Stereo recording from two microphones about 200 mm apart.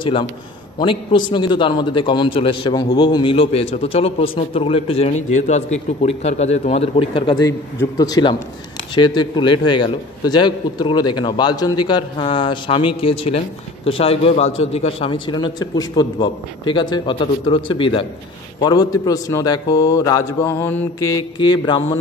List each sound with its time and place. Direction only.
0.0 s a man's voice: 25° left (ahead or behind)